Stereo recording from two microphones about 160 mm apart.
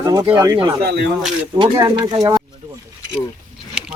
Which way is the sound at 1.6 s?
25° right (ahead or behind).